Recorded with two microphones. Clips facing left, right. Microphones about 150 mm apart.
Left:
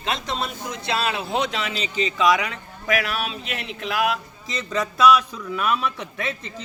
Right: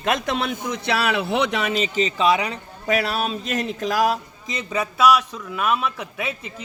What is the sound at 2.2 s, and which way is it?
Speech, 30° right (ahead or behind).